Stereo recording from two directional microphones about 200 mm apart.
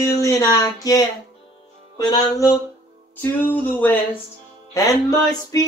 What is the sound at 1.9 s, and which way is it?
Music, 20° left (ahead or behind).